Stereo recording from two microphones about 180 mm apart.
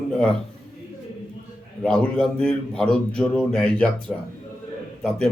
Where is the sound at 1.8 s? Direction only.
5° left (ahead or behind).